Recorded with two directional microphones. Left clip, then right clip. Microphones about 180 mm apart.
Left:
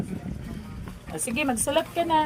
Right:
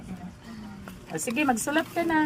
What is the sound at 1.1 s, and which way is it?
Speech, 5° right (ahead or behind).